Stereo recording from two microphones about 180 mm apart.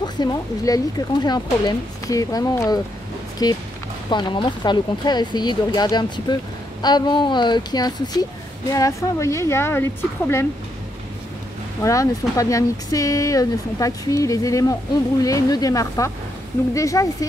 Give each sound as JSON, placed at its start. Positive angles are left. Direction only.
{"t": 0.0, "sound": "a woman's voice", "side_deg": 20}
{"t": 11.8, "sound": "a woman's voice", "side_deg": 20}